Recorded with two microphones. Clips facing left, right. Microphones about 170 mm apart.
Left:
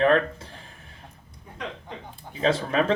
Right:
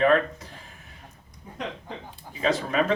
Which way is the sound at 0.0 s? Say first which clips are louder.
Even; 30° left (ahead or behind).